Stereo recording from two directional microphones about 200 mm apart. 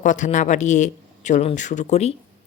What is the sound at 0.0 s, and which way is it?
Speech, 40° left (ahead or behind).